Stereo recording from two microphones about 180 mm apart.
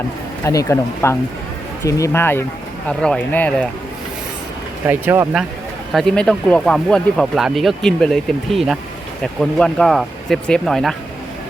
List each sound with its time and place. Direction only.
0.4 s speech: 15° left (ahead or behind)
4.9 s speech: 10° right (ahead or behind)
5.9 s speech: centre (ahead or behind)